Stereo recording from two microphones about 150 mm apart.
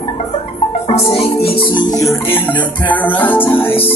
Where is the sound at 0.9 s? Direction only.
40° left (ahead or behind).